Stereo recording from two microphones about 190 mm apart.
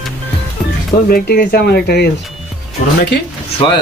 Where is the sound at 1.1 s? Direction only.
55° left (ahead or behind).